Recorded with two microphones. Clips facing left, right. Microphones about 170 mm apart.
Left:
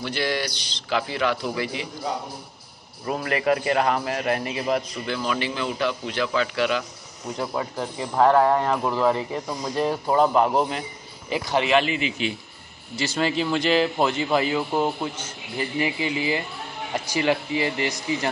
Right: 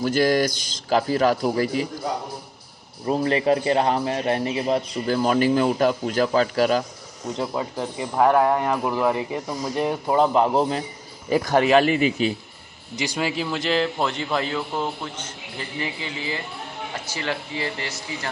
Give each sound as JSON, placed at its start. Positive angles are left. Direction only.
{"t": 0.0, "sound": "a man's voice", "side_deg": -45}
{"t": 3.1, "sound": "a man's voice", "side_deg": -30}
{"t": 7.3, "sound": "a man's voice", "side_deg": -20}
{"t": 11.2, "sound": "a man's voice", "side_deg": -45}
{"t": 12.9, "sound": "a man's voice", "side_deg": -15}